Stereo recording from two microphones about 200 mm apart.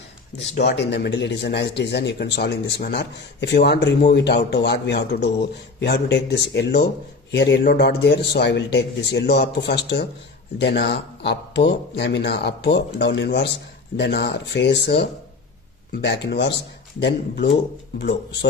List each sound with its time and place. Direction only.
0.5 s a man's voice: 60° left (ahead or behind)